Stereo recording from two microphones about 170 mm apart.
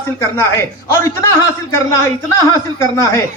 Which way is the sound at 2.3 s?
15° left (ahead or behind).